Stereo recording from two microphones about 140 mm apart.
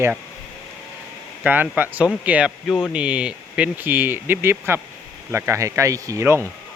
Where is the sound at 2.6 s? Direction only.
10° left (ahead or behind).